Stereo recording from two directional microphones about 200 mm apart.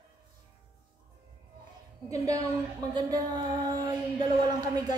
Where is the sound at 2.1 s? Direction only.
15° right (ahead or behind).